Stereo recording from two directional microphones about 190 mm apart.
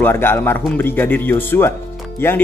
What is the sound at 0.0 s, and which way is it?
Speech, 10° left (ahead or behind).